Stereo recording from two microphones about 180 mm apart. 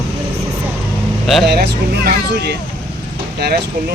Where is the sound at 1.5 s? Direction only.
65° right (ahead or behind).